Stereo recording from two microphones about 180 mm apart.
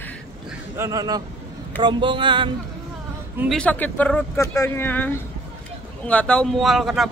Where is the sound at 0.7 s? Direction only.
20° right (ahead or behind).